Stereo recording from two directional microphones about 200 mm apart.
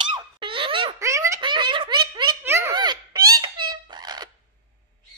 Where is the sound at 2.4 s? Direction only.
10° right (ahead or behind).